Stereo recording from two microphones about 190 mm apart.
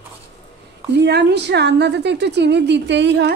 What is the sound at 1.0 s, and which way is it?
A woman's voice, 65° right (ahead or behind).